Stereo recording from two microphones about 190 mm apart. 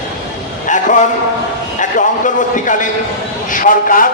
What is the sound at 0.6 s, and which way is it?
A man's voice, 40° left (ahead or behind).